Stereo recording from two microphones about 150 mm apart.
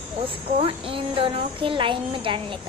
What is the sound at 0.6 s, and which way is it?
Speech, 35° right (ahead or behind).